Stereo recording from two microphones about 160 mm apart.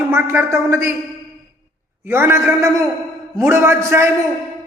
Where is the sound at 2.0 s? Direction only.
15° right (ahead or behind).